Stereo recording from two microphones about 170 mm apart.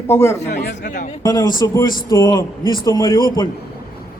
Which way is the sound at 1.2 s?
25° left (ahead or behind).